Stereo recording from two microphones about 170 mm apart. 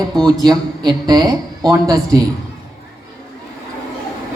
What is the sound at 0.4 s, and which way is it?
A woman's voice, 25° right (ahead or behind).